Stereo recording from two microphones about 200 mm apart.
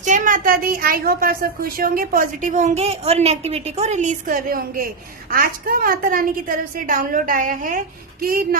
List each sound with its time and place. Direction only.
0.0 s a woman's voice: 40° right (ahead or behind)